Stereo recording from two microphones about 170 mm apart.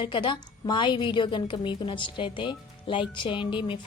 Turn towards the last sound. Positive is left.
turn(degrees=30)  # may be behind; listen again after turning